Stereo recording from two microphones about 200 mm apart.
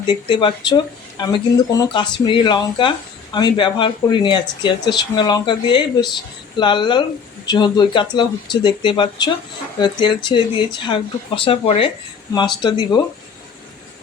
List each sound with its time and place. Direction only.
0.1 s speech: 25° left (ahead or behind)